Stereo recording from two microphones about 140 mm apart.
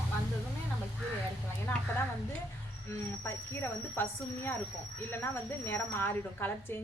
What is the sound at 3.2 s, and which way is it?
A woman's voice, 15° left (ahead or behind).